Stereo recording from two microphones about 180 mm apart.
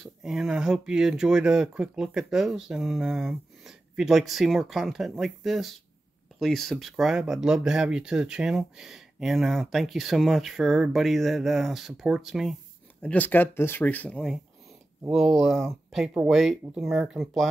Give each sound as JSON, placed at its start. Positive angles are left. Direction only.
{"t": 0.0, "sound": "speech", "side_deg": 0}